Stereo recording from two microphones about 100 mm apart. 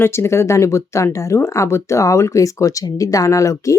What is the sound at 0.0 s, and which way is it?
Speech, 25° left (ahead or behind).